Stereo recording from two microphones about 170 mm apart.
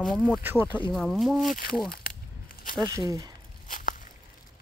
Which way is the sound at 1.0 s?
Centre (ahead or behind).